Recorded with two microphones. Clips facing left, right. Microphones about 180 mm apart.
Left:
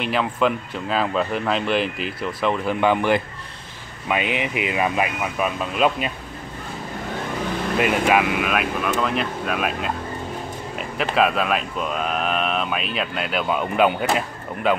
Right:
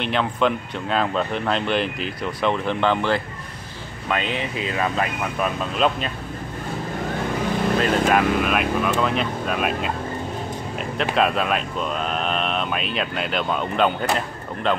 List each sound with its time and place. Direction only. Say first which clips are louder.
0.0 s speech: even; 5° left (ahead or behind)
7.8 s speech: left 2 dB; 5° left (ahead or behind)